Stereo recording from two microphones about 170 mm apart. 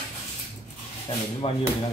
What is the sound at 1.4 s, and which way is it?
Speech, 35° left (ahead or behind).